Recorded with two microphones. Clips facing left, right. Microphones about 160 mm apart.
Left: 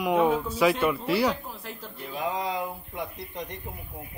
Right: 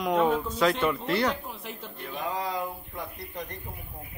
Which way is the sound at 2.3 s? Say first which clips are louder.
Even; 20° left (ahead or behind).